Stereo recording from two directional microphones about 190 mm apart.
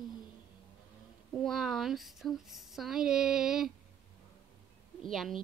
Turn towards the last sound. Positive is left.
turn(degrees=0)  # may be behind; listen again after turning